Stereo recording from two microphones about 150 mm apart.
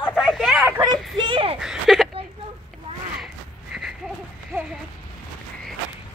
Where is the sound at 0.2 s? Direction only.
5° right (ahead or behind).